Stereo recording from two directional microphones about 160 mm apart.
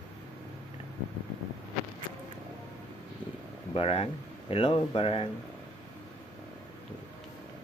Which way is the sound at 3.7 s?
35° left (ahead or behind).